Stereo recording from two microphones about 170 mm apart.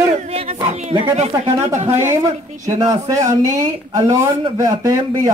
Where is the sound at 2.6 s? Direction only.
20° right (ahead or behind).